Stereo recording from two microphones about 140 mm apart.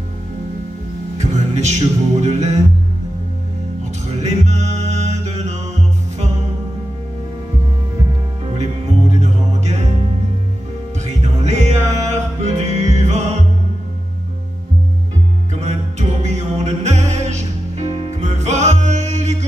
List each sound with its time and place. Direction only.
1.1 s music: 55° right (ahead or behind)
4.2 s music: 55° right (ahead or behind)
9.1 s music: 50° right (ahead or behind)
11.1 s music: 55° right (ahead or behind)
15.6 s music: 55° right (ahead or behind)